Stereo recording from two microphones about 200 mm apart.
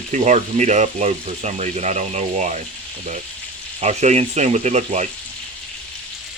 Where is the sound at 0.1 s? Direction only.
35° right (ahead or behind).